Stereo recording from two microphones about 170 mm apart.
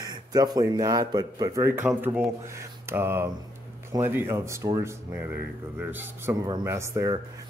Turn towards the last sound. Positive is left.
turn(degrees=-20)  # may be behind; listen again after turning